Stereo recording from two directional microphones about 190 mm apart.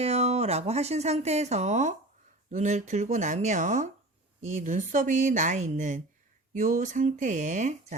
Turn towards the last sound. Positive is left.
turn(degrees=-40)  # may be behind; listen again after turning